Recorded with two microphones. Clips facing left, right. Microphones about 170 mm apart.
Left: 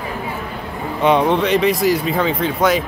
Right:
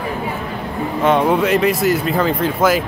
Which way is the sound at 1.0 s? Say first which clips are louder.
Even; centre (ahead or behind).